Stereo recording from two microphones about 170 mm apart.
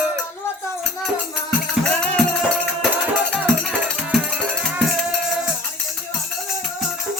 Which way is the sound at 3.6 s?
Centre (ahead or behind).